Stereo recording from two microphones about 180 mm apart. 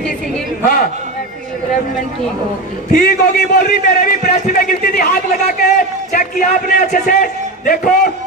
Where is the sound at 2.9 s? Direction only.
50° left (ahead or behind).